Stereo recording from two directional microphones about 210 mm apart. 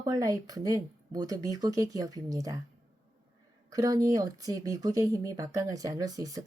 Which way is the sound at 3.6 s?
15° right (ahead or behind).